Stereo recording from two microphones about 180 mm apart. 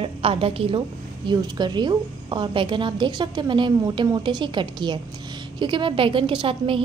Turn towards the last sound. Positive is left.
turn(degrees=-30)  # may be behind; listen again after turning